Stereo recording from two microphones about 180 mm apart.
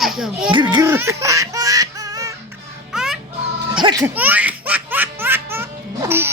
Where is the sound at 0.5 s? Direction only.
25° right (ahead or behind).